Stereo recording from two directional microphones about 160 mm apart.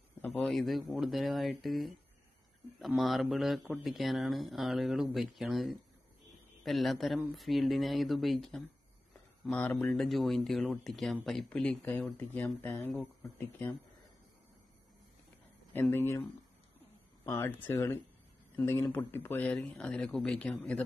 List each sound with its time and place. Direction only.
0.3 s speech: centre (ahead or behind)
3.0 s speech: centre (ahead or behind)
15.7 s speech: 15° left (ahead or behind)